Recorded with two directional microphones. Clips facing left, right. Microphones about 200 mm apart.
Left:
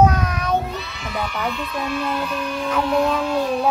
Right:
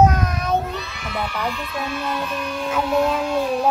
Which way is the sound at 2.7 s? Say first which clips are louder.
Even; 5° right (ahead or behind).